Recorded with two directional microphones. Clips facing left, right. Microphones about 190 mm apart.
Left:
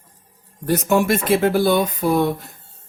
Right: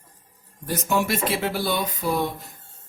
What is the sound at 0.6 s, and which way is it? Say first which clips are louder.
Speech: left 7 dB; 55° left (ahead or behind).